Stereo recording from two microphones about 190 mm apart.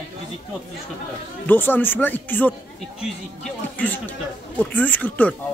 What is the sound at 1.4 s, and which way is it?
Speech, 10° left (ahead or behind).